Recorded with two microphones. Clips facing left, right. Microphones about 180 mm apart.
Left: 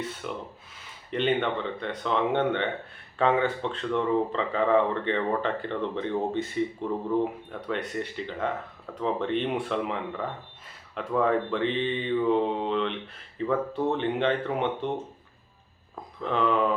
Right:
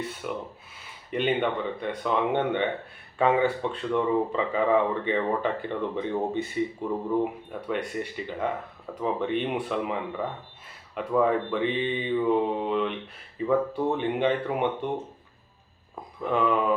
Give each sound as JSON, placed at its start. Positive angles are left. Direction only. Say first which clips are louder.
{"t": 0.2, "sound": "speech", "louder": "right 2 dB", "side_deg": -10}
{"t": 16.2, "sound": "speech", "louder": "right 1 dB", "side_deg": -10}